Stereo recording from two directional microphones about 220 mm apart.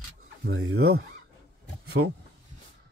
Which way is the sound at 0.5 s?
65° right (ahead or behind).